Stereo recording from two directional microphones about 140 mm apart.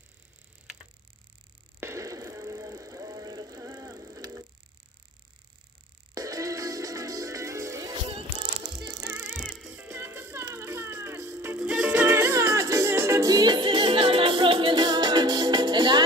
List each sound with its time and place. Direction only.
1.8 s a sound: 20° right (ahead or behind)
6.1 s music: 25° right (ahead or behind)
8.1 s music: 35° right (ahead or behind)
9.0 s music: 10° right (ahead or behind)
9.9 s music: 15° right (ahead or behind)
12.2 s music: 20° right (ahead or behind)